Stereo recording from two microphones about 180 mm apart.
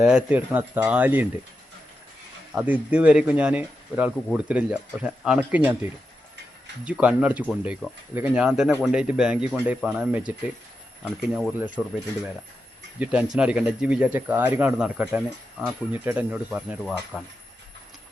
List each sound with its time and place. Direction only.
0.0 s speech: 5° right (ahead or behind)
2.6 s speech: 5° right (ahead or behind)
6.8 s speech: 5° right (ahead or behind)
13.0 s speech: 5° right (ahead or behind)